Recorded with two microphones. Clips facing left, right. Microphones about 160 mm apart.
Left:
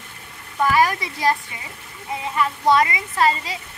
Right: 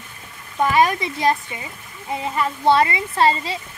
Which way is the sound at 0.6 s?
25° right (ahead or behind).